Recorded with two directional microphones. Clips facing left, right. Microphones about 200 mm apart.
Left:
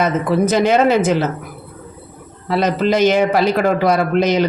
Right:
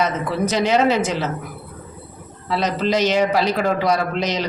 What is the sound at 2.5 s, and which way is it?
Speech, 55° left (ahead or behind).